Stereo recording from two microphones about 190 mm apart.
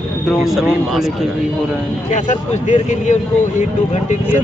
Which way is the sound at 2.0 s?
40° left (ahead or behind).